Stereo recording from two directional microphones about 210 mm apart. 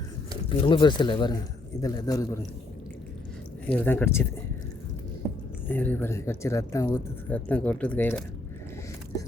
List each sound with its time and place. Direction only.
0.5 s speech: 25° left (ahead or behind)
3.7 s speech: 10° left (ahead or behind)
5.6 s speech: 10° left (ahead or behind)